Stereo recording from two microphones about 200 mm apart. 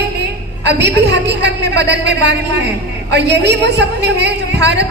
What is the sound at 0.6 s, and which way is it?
A woman's voice, 60° right (ahead or behind).